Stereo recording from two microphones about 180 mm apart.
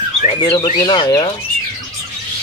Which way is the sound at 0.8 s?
20° left (ahead or behind).